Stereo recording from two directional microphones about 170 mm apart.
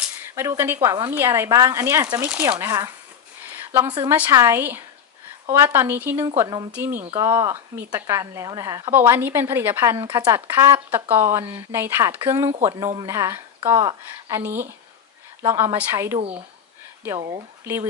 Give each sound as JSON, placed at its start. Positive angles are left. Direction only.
{"t": 0.3, "sound": "speech", "side_deg": -15}
{"t": 3.4, "sound": "a sound", "side_deg": -10}
{"t": 4.1, "sound": "speech", "side_deg": -15}